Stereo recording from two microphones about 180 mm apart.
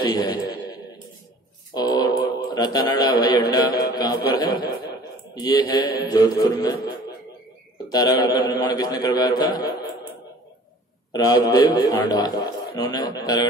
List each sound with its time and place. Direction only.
0.1 s a man's voice: 20° left (ahead or behind)
1.7 s a sound: 25° left (ahead or behind)
3.5 s a man's voice: 20° left (ahead or behind)
7.9 s a man's voice: 20° left (ahead or behind)
11.1 s a man's voice: 20° left (ahead or behind)